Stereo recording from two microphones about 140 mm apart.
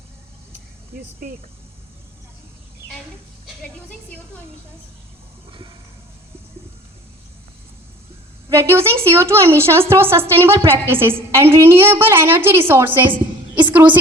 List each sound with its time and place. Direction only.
8.4 s a woman's voice: 20° right (ahead or behind)